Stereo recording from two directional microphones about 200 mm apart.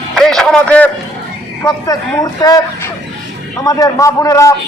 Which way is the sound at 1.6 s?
15° left (ahead or behind).